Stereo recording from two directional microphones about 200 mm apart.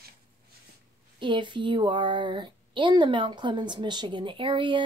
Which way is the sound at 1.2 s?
25° right (ahead or behind).